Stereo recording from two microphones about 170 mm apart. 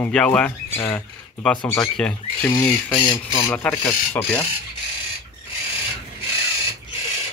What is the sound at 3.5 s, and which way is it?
Speech, 5° left (ahead or behind).